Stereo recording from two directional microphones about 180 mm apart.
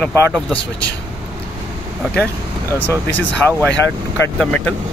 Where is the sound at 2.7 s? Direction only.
15° left (ahead or behind).